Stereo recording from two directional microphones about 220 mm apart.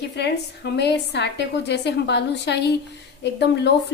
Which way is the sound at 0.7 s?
50° left (ahead or behind).